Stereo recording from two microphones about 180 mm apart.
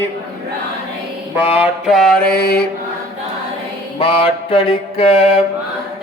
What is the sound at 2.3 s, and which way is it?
Mantra, 60° left (ahead or behind).